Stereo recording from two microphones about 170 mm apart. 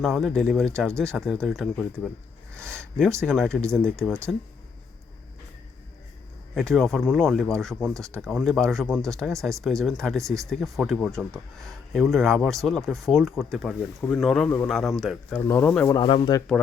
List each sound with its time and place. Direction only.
0.0 s speech: centre (ahead or behind)
3.2 s speech: centre (ahead or behind)
6.5 s speech: centre (ahead or behind)
15.4 s speech: 15° left (ahead or behind)
15.9 s speech: 30° left (ahead or behind)